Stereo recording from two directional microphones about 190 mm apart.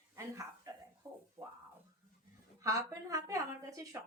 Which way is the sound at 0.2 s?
15° right (ahead or behind).